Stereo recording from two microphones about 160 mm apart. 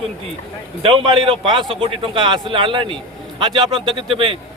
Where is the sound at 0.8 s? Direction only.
35° right (ahead or behind).